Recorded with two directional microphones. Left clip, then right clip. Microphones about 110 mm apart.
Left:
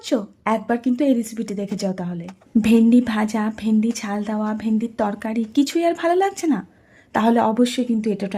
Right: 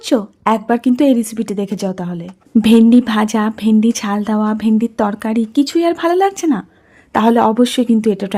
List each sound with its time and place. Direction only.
0.0 s speech: 35° right (ahead or behind)
0.8 s a woman's voice: 45° right (ahead or behind)
7.8 s speech: 50° right (ahead or behind)